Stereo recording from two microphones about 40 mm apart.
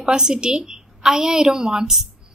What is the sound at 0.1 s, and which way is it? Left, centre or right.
A woman's voice, centre.